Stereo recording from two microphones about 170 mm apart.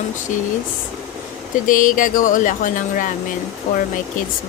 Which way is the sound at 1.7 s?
50° left (ahead or behind).